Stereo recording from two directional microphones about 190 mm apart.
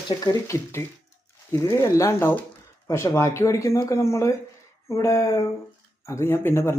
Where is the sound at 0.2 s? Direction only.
15° left (ahead or behind).